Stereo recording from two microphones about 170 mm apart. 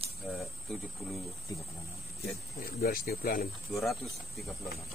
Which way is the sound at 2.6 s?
60° left (ahead or behind).